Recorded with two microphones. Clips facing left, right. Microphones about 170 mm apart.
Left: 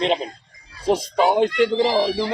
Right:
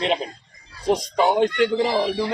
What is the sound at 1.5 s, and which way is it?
Speech, 35° left (ahead or behind).